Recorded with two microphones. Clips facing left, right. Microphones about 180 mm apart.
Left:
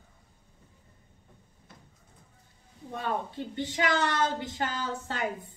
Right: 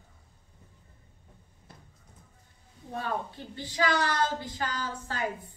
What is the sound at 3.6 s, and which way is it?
A woman's voice, 20° left (ahead or behind).